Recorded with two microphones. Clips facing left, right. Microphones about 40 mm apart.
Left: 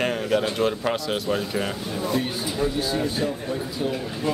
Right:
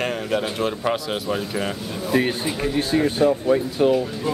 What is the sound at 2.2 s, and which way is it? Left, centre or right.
Speech, right.